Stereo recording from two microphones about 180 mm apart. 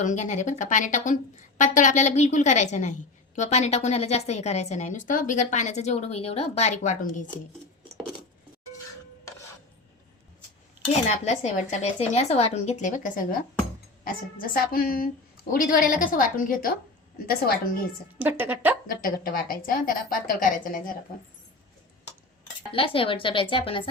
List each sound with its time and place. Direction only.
0.0 s a woman's voice: 40° left (ahead or behind)
11.3 s a woman's voice: 40° left (ahead or behind); by 17.8 s 55° left (ahead or behind)
18.2 s a woman's voice: 10° right (ahead or behind)
18.9 s a woman's voice: 50° left (ahead or behind)
22.7 s a woman's voice: 30° left (ahead or behind)